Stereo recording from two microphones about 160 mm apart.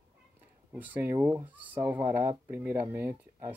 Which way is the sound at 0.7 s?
10° right (ahead or behind).